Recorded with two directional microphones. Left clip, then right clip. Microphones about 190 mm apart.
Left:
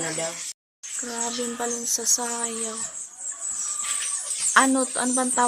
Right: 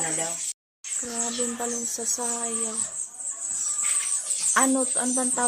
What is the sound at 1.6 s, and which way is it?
Speech, centre (ahead or behind).